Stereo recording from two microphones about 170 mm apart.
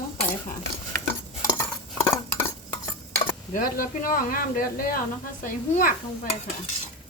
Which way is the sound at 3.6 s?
55° left (ahead or behind).